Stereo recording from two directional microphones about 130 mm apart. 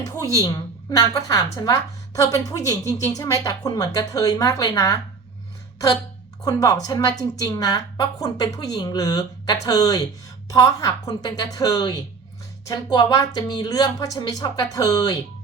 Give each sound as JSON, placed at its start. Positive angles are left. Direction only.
{"t": 0.0, "sound": "a woman's voice", "side_deg": 30}
{"t": 6.4, "sound": "a woman's voice", "side_deg": 30}